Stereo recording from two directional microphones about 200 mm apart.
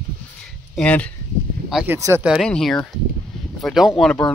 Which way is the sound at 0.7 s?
5° left (ahead or behind).